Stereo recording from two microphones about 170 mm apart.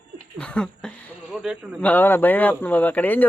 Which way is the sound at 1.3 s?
5° right (ahead or behind).